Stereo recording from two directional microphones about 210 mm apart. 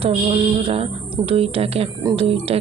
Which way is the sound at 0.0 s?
25° right (ahead or behind).